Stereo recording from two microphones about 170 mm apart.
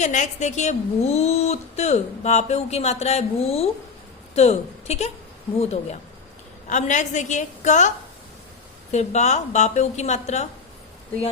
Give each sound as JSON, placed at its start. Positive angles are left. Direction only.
{"t": 0.0, "sound": "a woman's voice", "side_deg": 45}